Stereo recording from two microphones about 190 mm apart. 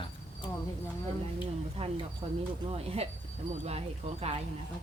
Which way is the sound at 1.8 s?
30° right (ahead or behind).